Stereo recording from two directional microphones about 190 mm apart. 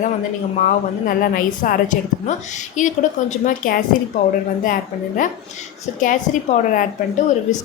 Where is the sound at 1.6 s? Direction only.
40° left (ahead or behind).